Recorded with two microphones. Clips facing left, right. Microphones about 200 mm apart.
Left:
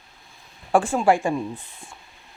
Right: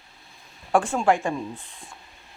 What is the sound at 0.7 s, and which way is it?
Speech, 5° left (ahead or behind).